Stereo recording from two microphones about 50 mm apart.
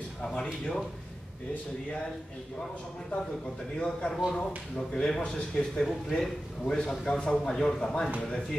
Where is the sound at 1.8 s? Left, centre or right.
Centre.